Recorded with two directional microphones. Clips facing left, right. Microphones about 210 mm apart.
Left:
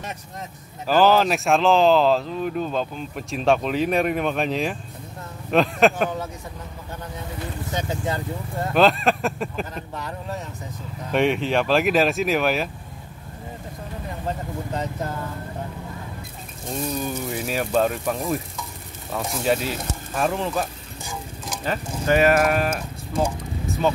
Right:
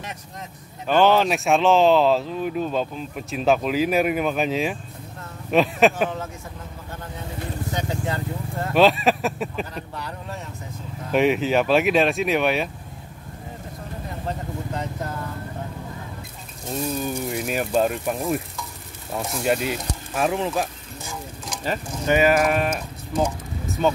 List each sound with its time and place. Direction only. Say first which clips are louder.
0.8 s speech: even; centre (ahead or behind)
7.7 s speech: left 2 dB; 20° left (ahead or behind)
8.7 s speech: right 1 dB; centre (ahead or behind)
11.1 s speech: right 1 dB; centre (ahead or behind)
16.7 s speech: right 1 dB; centre (ahead or behind)
22.0 s speech: even; 5° right (ahead or behind)